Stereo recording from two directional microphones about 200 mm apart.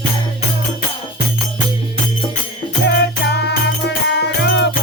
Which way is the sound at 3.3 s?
60° left (ahead or behind).